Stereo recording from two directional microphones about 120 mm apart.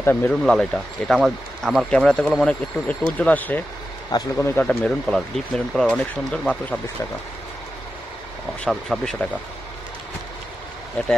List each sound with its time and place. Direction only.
0.0 s speech: 15° left (ahead or behind)
0.4 s speech: centre (ahead or behind)
2.4 s speech: 10° left (ahead or behind)
5.0 s speech: 5° left (ahead or behind)
8.6 s speech: centre (ahead or behind)
11.0 s speech: 10° left (ahead or behind)